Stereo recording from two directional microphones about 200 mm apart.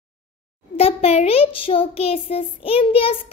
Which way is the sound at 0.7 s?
30° left (ahead or behind).